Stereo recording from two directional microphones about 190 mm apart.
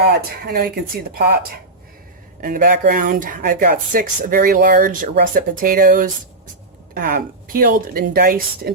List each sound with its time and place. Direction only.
0.1 s speech: 55° right (ahead or behind)